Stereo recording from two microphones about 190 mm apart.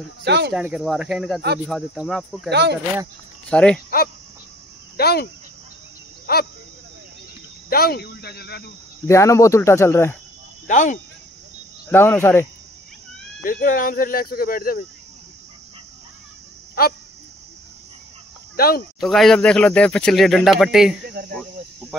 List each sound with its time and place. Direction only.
0.2 s speech: 65° right (ahead or behind)
0.5 s speech: 5° right (ahead or behind)
2.5 s speech: 65° right (ahead or behind)
3.4 s speech: 5° left (ahead or behind)
4.9 s speech: 55° left (ahead or behind)
7.7 s speech: 55° left (ahead or behind)
9.0 s speech: 15° left (ahead or behind)
10.7 s speech: 40° left (ahead or behind)
11.9 s speech: 10° left (ahead or behind)
13.4 s speech: 45° left (ahead or behind)
16.8 s speech: 55° left (ahead or behind)
18.6 s speech: 55° left (ahead or behind)
18.9 s speech: centre (ahead or behind)
21.0 s speech: 50° right (ahead or behind)